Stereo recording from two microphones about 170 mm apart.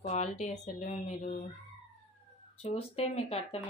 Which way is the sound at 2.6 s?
35° left (ahead or behind).